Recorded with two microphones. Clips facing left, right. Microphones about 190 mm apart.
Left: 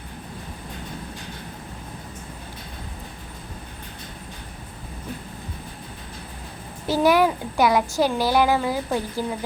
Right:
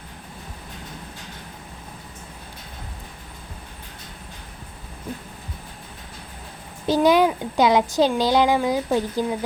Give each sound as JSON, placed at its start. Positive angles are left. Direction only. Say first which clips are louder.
{"t": 6.8, "sound": "a child's voice", "louder": "right 1 dB", "side_deg": -20}